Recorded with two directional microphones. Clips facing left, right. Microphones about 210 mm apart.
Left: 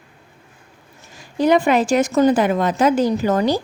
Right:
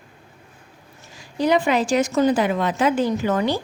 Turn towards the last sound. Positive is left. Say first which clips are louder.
# left 3 dB
turn(degrees=40)  # may be behind; listen again after turning